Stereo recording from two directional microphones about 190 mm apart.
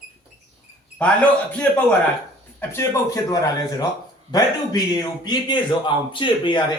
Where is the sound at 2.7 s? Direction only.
15° left (ahead or behind).